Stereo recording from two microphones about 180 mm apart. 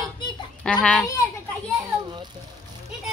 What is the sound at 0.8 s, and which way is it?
Speech, 5° left (ahead or behind).